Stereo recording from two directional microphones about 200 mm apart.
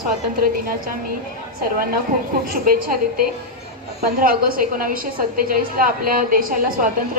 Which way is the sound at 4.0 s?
45° right (ahead or behind).